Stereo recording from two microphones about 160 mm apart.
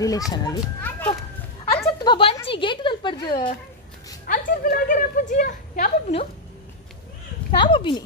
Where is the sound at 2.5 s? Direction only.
30° left (ahead or behind).